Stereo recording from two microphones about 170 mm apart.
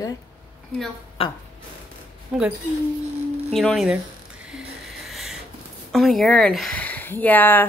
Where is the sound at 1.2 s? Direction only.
35° left (ahead or behind).